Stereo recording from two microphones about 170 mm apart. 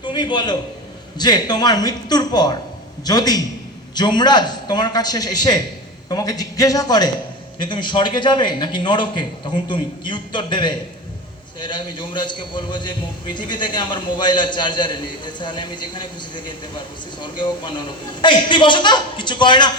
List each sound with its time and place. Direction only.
0.0 s a man's voice: 25° left (ahead or behind)